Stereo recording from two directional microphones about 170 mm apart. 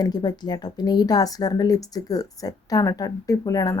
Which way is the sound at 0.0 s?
25° left (ahead or behind).